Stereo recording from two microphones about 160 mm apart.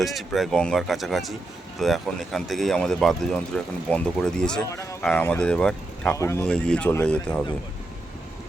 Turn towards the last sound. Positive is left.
turn(degrees=5)  # may be behind; listen again after turning